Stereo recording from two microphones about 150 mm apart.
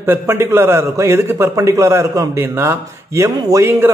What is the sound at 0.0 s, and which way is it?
A man's voice, 15° right (ahead or behind).